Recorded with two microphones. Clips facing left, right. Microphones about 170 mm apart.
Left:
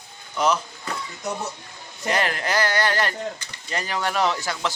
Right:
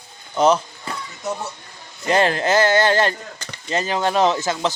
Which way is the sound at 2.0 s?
30° right (ahead or behind).